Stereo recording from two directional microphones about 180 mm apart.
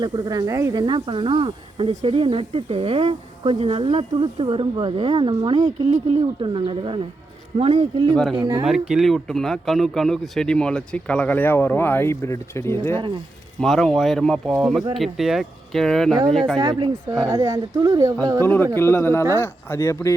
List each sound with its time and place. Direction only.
0.0 s speech: 20° right (ahead or behind)
8.1 s speech: 5° left (ahead or behind)
8.4 s speech: 25° right (ahead or behind)
8.6 s speech: 5° right (ahead or behind); by 13.0 s 15° left (ahead or behind)
13.6 s speech: centre (ahead or behind)
16.6 s speech: 25° right (ahead or behind)
18.4 s speech: 10° left (ahead or behind)